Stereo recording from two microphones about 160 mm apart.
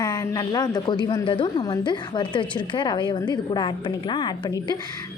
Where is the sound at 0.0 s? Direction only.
20° left (ahead or behind).